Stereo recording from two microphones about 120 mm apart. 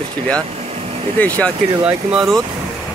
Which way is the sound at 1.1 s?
10° left (ahead or behind).